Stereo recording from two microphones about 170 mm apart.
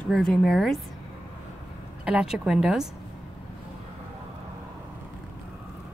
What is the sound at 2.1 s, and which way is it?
Speech, 5° right (ahead or behind).